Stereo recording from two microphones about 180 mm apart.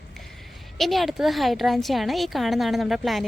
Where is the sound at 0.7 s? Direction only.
Centre (ahead or behind).